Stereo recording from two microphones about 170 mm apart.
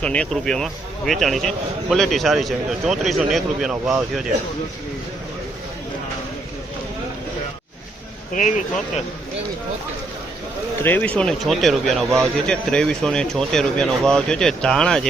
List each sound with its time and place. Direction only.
0.0 s a man's voice: 5° left (ahead or behind)
8.3 s speech: 45° left (ahead or behind)
10.8 s a man's voice: 10° left (ahead or behind)